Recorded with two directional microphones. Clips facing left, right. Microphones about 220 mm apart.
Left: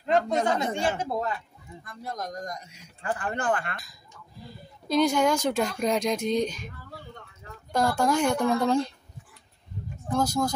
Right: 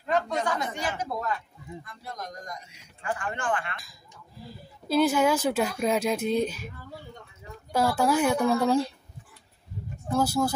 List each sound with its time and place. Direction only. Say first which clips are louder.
0.0 s speech: left 3 dB; 25° left (ahead or behind)
1.9 s a man's voice: left 9 dB; 45° left (ahead or behind)
4.4 s speech: right 1 dB; 5° right (ahead or behind)
10.0 s speech: right 1 dB; 5° right (ahead or behind)